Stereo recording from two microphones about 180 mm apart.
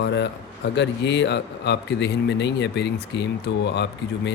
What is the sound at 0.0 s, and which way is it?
A man's voice, 75° left (ahead or behind).